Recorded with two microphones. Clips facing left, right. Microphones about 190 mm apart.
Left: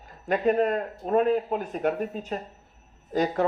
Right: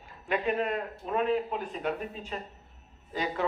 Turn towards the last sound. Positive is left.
turn(degrees=45)  # may be behind; listen again after turning